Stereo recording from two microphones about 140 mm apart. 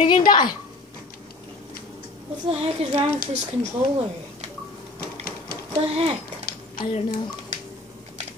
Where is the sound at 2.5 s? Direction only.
45° right (ahead or behind).